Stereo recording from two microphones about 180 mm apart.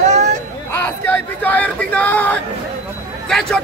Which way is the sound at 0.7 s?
10° left (ahead or behind).